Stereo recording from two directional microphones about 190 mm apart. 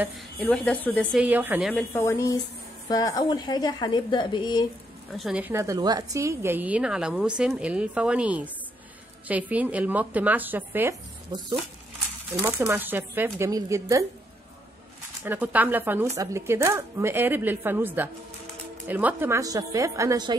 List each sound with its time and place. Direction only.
0.0 s a woman's voice: centre (ahead or behind)
1.1 s a woman's voice: 10° right (ahead or behind)
1.7 s a woman's voice: 10° left (ahead or behind)
5.1 s a woman's voice: 5° right (ahead or behind)
12.4 s a woman's voice: 15° right (ahead or behind)
15.2 s a woman's voice: 10° right (ahead or behind)